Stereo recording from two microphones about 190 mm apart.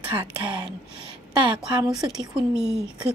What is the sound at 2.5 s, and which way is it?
Speech, 5° right (ahead or behind).